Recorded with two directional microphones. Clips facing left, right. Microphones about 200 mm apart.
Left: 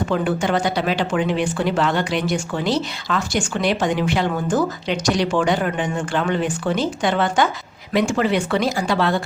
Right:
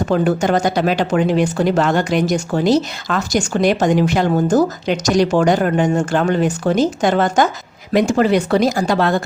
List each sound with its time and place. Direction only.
0.0 s speech: 45° right (ahead or behind)